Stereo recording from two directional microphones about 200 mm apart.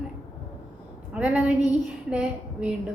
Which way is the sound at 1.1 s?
5° right (ahead or behind).